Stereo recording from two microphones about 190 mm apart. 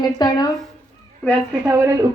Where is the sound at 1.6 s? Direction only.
15° right (ahead or behind).